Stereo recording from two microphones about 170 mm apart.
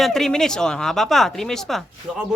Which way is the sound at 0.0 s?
Centre (ahead or behind).